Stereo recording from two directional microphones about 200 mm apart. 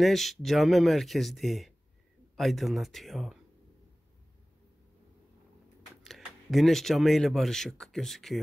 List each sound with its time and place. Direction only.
0.0 s speech: centre (ahead or behind)
6.0 s speech: centre (ahead or behind)